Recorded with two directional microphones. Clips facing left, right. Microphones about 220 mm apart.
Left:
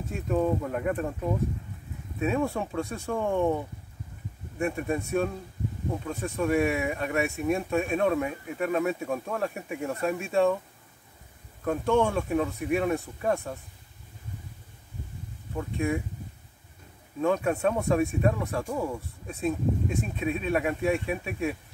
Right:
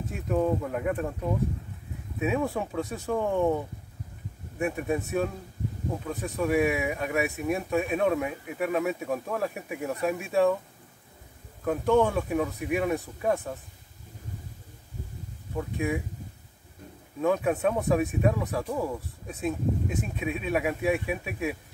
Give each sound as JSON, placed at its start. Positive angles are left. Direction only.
{"t": 0.3, "sound": "speech", "side_deg": -5}
{"t": 2.1, "sound": "speech", "side_deg": -5}
{"t": 11.6, "sound": "speech", "side_deg": -5}
{"t": 11.9, "sound": "speech", "side_deg": -15}
{"t": 12.2, "sound": "speech", "side_deg": -5}
{"t": 15.5, "sound": "speech", "side_deg": -5}
{"t": 17.2, "sound": "speech", "side_deg": -5}